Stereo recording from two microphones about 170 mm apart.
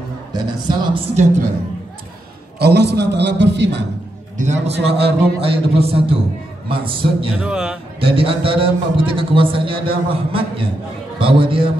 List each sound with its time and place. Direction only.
0.3 s speech: 25° right (ahead or behind)
2.6 s a man's voice: 75° right (ahead or behind)
4.4 s a man's voice: 45° right (ahead or behind)
7.3 s a man's voice: 5° right (ahead or behind)
8.0 s a man's voice: 35° right (ahead or behind)